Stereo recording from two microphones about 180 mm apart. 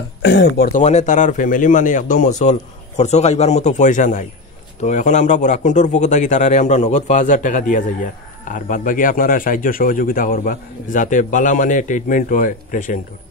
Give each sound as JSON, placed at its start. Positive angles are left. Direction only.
{"t": 0.2, "sound": "speech", "side_deg": 70}
{"t": 0.7, "sound": "a man's voice", "side_deg": 40}